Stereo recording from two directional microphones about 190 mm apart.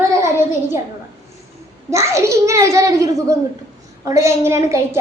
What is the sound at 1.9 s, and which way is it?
A child's voice, 15° right (ahead or behind).